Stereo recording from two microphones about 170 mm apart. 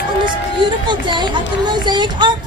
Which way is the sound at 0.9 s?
25° right (ahead or behind).